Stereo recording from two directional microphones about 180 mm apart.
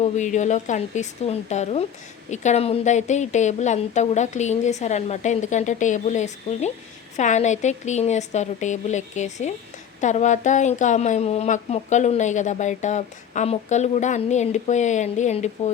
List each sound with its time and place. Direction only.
0.0 s speech: 40° left (ahead or behind)